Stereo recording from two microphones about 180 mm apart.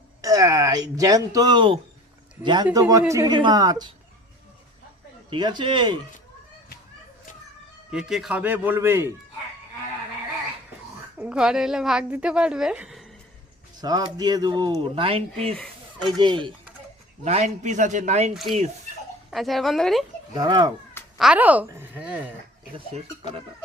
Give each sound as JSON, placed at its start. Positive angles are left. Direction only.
{"t": 0.2, "sound": "speech", "side_deg": -20}
{"t": 5.3, "sound": "speech", "side_deg": -25}
{"t": 7.9, "sound": "a man's voice", "side_deg": -5}
{"t": 11.2, "sound": "a woman's voice", "side_deg": -5}
{"t": 13.8, "sound": "speech", "side_deg": -20}
{"t": 17.2, "sound": "a man's voice", "side_deg": -40}
{"t": 18.3, "sound": "a woman's voice", "side_deg": 0}
{"t": 20.3, "sound": "speech", "side_deg": -25}
{"t": 21.2, "sound": "a man's voice", "side_deg": -5}